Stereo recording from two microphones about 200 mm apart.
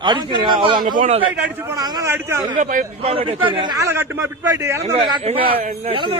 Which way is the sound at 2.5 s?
40° right (ahead or behind).